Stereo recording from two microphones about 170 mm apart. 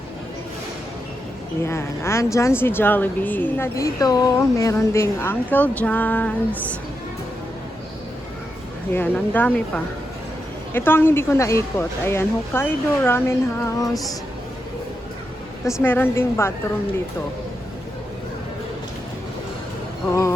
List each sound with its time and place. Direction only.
1.6 s speech: 15° left (ahead or behind)
8.9 s speech: 10° left (ahead or behind)
15.6 s speech: 10° left (ahead or behind)